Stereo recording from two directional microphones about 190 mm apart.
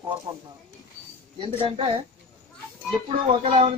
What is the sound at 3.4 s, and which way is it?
Speech, 30° right (ahead or behind).